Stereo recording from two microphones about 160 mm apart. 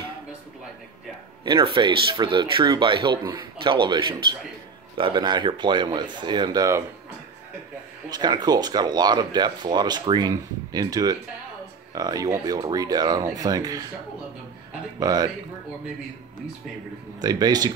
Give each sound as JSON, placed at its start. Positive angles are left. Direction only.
{"t": 1.4, "sound": "speech", "side_deg": -30}
{"t": 8.1, "sound": "speech", "side_deg": -25}
{"t": 15.0, "sound": "speech", "side_deg": -25}
{"t": 17.2, "sound": "speech", "side_deg": -25}